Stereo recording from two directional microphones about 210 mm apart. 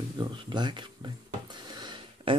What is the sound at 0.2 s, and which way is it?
Speech, 20° right (ahead or behind).